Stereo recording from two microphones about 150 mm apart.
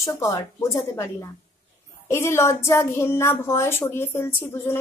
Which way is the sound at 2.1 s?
15° left (ahead or behind).